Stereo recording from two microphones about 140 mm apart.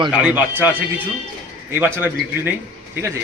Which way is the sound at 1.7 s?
15° right (ahead or behind).